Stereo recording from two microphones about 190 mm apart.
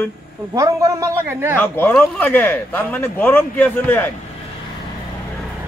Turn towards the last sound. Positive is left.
turn(degrees=10)  # may be behind; listen again after turning